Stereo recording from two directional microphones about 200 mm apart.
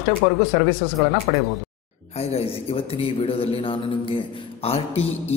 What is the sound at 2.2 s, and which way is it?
A man's voice, 30° left (ahead or behind).